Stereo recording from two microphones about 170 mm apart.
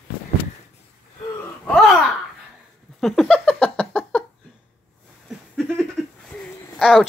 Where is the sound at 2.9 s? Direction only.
Centre (ahead or behind).